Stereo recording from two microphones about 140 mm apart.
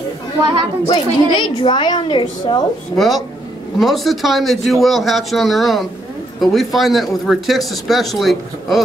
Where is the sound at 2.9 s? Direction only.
Centre (ahead or behind).